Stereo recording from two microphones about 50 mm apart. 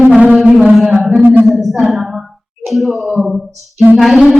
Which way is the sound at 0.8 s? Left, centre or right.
Centre.